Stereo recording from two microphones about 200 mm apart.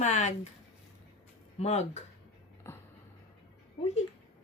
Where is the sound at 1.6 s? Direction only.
35° left (ahead or behind).